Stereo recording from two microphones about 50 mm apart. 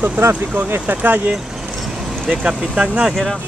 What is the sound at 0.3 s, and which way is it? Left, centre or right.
Speech, right.